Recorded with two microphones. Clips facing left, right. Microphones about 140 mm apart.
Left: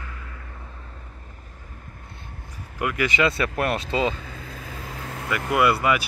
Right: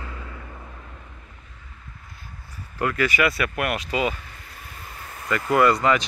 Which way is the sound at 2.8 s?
15° left (ahead or behind).